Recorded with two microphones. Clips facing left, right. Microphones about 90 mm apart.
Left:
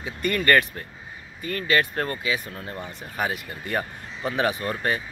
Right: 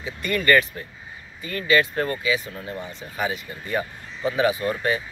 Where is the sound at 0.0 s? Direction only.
45° left (ahead or behind).